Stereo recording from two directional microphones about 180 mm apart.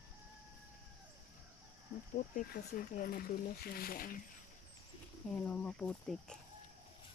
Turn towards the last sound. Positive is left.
turn(degrees=5)  # may be behind; listen again after turning